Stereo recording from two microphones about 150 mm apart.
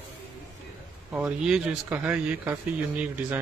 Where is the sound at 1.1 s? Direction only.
5° right (ahead or behind).